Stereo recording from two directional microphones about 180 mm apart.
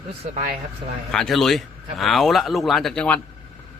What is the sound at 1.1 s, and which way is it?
Speech, centre (ahead or behind).